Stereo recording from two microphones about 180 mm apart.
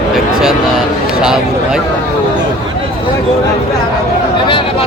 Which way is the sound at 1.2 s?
5° right (ahead or behind).